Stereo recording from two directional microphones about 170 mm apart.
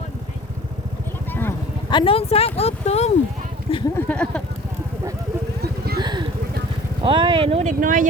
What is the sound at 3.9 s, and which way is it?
Speech, 10° left (ahead or behind).